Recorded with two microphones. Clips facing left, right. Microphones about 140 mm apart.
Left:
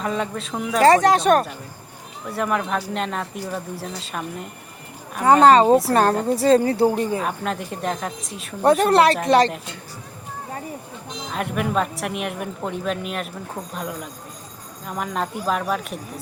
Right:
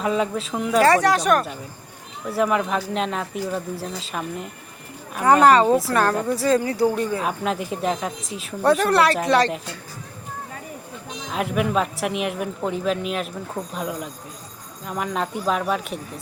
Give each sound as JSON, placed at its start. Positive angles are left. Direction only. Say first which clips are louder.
{"t": 0.0, "sound": "a woman's voice", "louder": "right 3 dB", "side_deg": 0}
{"t": 0.9, "sound": "speech", "louder": "left 5 dB", "side_deg": 20}
{"t": 2.3, "sound": "a woman's voice", "louder": "right 2 dB", "side_deg": 0}
{"t": 5.2, "sound": "speech", "louder": "left 2 dB", "side_deg": 25}
{"t": 7.2, "sound": "a woman's voice", "louder": "right 1 dB", "side_deg": 0}
{"t": 8.8, "sound": "speech", "louder": "left 2 dB", "side_deg": 25}
{"t": 11.3, "sound": "a woman's voice", "louder": "right 2 dB", "side_deg": 0}